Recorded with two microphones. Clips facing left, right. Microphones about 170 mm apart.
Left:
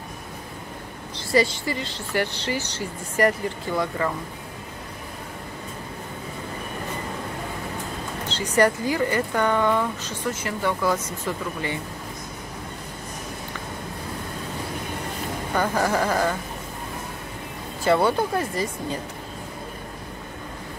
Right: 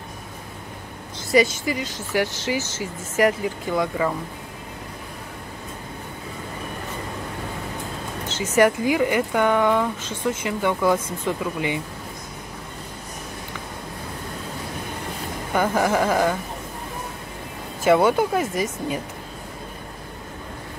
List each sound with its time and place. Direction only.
1.3 s speech: 15° right (ahead or behind)
8.5 s speech: 15° right (ahead or behind)
15.5 s speech: 10° right (ahead or behind)
17.8 s speech: 15° right (ahead or behind)